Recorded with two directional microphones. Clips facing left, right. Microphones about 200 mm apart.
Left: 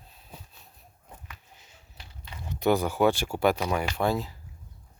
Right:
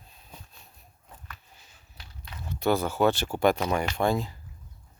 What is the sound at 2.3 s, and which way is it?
Speech, 20° left (ahead or behind).